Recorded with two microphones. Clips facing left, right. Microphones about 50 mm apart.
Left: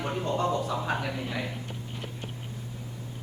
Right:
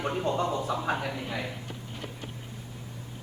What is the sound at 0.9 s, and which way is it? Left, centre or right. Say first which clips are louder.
Speech: left 1 dB; centre.